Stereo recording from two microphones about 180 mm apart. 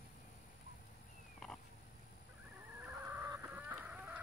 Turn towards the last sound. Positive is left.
turn(degrees=-10)  # may be behind; listen again after turning